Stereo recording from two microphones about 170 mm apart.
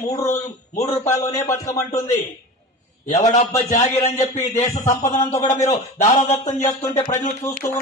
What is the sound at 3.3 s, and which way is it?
Speech, 40° left (ahead or behind).